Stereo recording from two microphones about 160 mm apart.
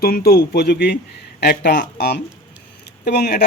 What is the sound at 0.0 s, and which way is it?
Speech, 70° left (ahead or behind).